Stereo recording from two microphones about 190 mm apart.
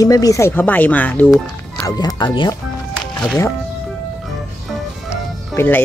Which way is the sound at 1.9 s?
20° left (ahead or behind).